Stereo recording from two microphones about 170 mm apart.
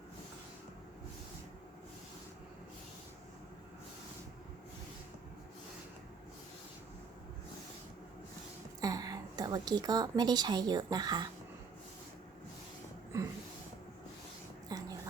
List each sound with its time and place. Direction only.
8.8 s a woman's voice: 20° right (ahead or behind)
13.1 s a sound: 15° right (ahead or behind)
14.7 s dog: 20° right (ahead or behind)